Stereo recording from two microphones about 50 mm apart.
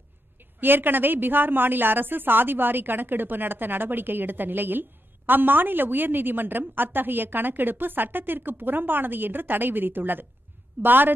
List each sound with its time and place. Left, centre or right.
0.6 s a woman's voice: right